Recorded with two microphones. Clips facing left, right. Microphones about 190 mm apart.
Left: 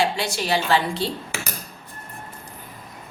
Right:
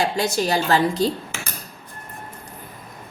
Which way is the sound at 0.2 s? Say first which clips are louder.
Right 3 dB; 40° right (ahead or behind).